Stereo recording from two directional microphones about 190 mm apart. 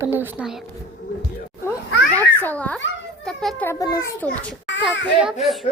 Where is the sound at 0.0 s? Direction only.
10° right (ahead or behind).